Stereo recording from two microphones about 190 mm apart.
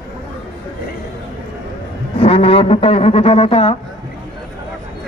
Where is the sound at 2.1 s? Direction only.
30° left (ahead or behind).